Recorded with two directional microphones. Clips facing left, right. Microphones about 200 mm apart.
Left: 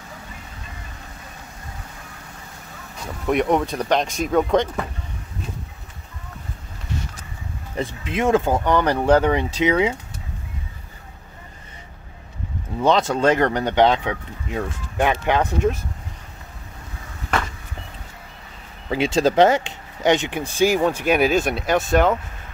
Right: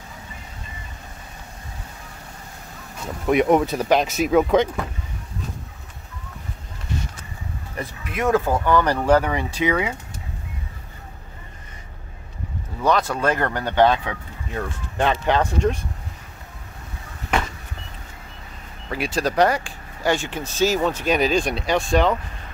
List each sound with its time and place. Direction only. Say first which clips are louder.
3.3 s speech: right 2 dB; 5° right (ahead or behind)
7.7 s speech: left 5 dB; 25° left (ahead or behind)
12.8 s speech: left 3 dB; 25° left (ahead or behind)
18.9 s speech: left 5 dB; 25° left (ahead or behind); by 22.2 s 5° left (ahead or behind)